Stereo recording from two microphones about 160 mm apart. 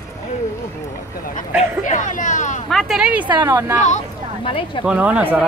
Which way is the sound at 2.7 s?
Centre (ahead or behind).